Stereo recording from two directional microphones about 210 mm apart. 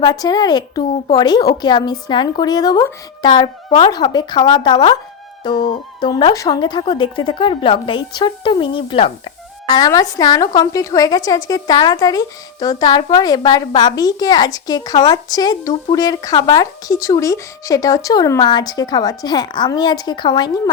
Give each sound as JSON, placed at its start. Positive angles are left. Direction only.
{"t": 0.0, "sound": "speech", "side_deg": 20}